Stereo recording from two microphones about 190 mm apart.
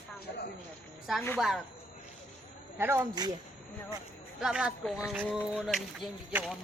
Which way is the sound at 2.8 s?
15° right (ahead or behind).